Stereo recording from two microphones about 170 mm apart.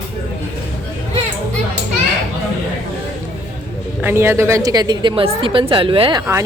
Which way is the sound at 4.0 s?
15° right (ahead or behind).